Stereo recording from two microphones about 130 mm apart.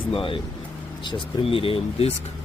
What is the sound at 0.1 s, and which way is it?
Speech, 45° left (ahead or behind).